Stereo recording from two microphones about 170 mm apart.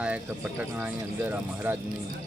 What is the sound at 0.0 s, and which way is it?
Speech, 5° right (ahead or behind).